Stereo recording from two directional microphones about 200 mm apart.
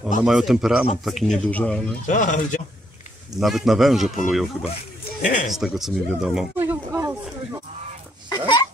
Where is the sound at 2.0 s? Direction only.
40° left (ahead or behind).